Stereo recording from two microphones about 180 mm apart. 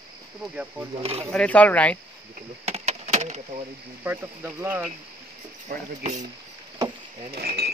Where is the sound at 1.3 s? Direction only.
5° left (ahead or behind).